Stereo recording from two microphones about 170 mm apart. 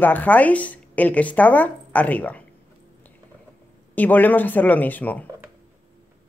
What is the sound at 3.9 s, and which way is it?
Speech, 10° left (ahead or behind).